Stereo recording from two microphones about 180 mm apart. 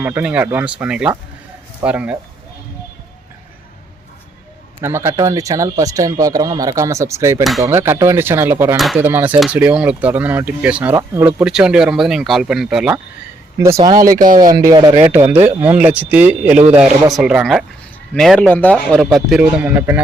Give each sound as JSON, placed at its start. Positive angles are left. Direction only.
{"t": 0.0, "sound": "speech", "side_deg": -10}
{"t": 4.8, "sound": "speech", "side_deg": -15}
{"t": 13.7, "sound": "speech", "side_deg": -25}